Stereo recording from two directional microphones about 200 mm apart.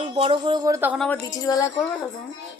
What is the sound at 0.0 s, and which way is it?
Speech, 25° right (ahead or behind).